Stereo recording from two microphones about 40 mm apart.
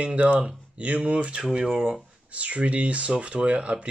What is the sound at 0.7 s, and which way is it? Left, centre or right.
Speech, right.